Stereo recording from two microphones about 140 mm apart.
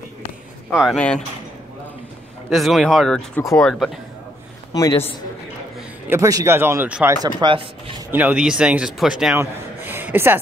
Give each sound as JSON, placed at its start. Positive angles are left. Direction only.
{"t": 0.9, "sound": "speech", "side_deg": 10}
{"t": 2.5, "sound": "speech", "side_deg": 0}
{"t": 4.7, "sound": "a man's voice", "side_deg": 20}
{"t": 6.0, "sound": "speech", "side_deg": -20}
{"t": 7.1, "sound": "speech", "side_deg": -30}
{"t": 8.1, "sound": "speech", "side_deg": -10}
{"t": 9.4, "sound": "a sound", "side_deg": -15}